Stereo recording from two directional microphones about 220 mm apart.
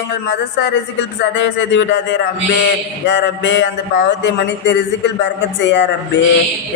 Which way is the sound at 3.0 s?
55° left (ahead or behind).